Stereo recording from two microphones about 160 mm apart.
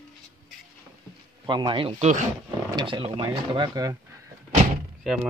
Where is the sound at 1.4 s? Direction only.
30° right (ahead or behind).